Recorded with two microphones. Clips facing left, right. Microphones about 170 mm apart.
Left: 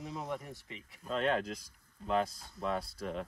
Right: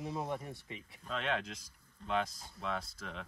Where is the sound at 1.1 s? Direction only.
Centre (ahead or behind).